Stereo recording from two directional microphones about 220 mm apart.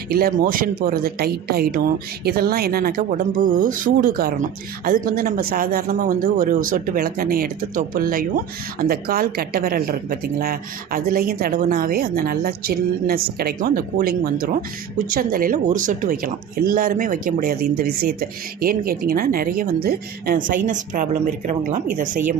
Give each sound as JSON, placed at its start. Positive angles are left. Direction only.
{"t": 0.1, "sound": "speech", "side_deg": -40}